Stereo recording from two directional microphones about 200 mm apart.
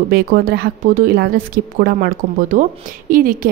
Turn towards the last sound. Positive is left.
turn(degrees=-45)  # may be behind; listen again after turning